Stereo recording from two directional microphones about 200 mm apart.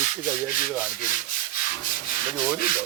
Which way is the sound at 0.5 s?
40° left (ahead or behind).